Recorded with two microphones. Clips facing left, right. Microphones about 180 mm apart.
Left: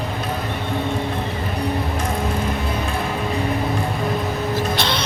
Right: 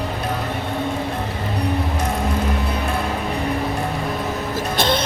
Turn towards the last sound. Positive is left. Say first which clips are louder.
# right 3 dB
turn(degrees=-50)  # may be behind; listen again after turning